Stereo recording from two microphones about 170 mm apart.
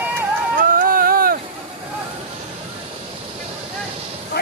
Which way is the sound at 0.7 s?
55° right (ahead or behind).